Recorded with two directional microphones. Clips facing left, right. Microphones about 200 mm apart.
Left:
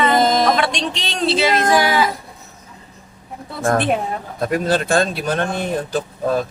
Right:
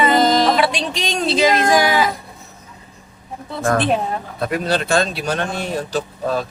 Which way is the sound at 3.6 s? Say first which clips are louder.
Even; 50° left (ahead or behind).